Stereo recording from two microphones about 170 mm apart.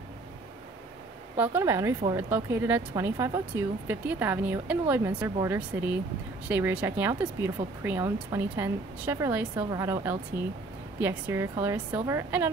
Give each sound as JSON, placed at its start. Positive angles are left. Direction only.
{"t": 1.3, "sound": "speech", "side_deg": -10}